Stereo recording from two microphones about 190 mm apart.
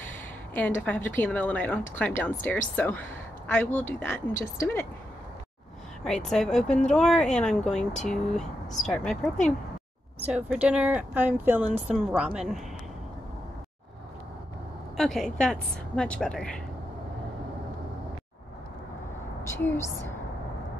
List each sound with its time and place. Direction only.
0.6 s a woman's voice: 10° left (ahead or behind)
6.0 s a woman's voice: 5° left (ahead or behind)
15.0 s a woman's voice: centre (ahead or behind)
19.5 s a woman's voice: 10° left (ahead or behind)